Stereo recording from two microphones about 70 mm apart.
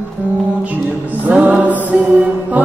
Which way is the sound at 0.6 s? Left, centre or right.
Right.